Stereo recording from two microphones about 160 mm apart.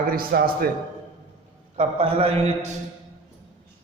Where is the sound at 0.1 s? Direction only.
65° right (ahead or behind).